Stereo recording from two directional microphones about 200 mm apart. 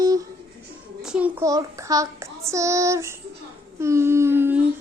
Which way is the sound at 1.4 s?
15° right (ahead or behind).